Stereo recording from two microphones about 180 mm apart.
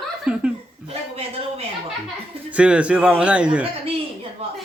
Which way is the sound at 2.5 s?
5° right (ahead or behind).